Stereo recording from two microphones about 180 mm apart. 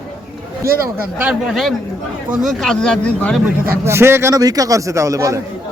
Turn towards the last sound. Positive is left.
turn(degrees=-15)  # may be behind; listen again after turning